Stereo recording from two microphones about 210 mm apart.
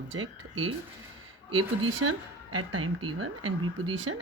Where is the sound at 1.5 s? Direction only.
85° right.